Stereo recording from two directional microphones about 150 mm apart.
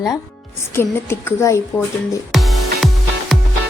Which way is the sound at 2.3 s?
Centre (ahead or behind).